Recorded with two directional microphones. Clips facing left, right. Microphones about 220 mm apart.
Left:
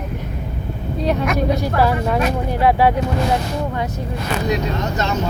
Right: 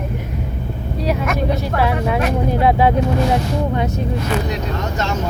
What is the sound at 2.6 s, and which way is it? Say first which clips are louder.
Speech: left 1 dB; 20° right (ahead or behind).